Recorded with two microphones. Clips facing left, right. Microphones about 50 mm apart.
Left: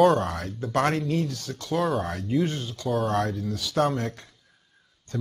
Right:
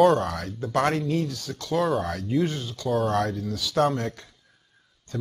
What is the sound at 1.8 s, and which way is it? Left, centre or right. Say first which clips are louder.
Speech: right 1 dB; centre.